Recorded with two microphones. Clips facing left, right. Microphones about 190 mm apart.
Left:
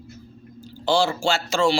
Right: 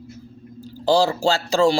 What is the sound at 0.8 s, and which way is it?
Speech, 40° right (ahead or behind).